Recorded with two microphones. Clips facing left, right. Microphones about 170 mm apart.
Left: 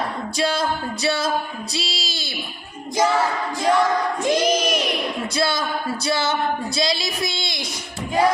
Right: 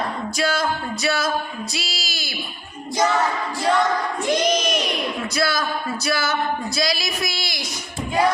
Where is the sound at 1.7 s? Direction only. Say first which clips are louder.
Left 2 dB; 30° left (ahead or behind).